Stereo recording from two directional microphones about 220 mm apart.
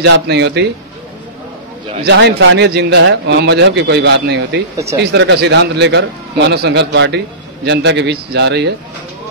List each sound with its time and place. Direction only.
0.0 s a man's voice: 50° right (ahead or behind)
2.0 s a man's voice: 50° right (ahead or behind)